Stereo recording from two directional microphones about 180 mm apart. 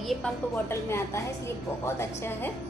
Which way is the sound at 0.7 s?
15° left (ahead or behind).